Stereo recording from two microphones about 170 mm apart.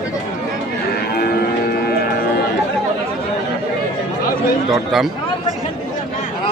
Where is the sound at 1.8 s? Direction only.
65° left (ahead or behind).